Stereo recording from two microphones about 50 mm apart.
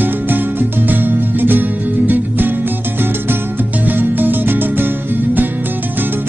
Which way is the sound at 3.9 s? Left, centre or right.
Right.